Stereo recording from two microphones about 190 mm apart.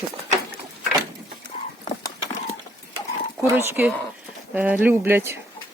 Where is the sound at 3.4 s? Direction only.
10° right (ahead or behind).